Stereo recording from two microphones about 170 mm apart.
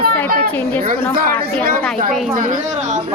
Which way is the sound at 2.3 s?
50° right (ahead or behind).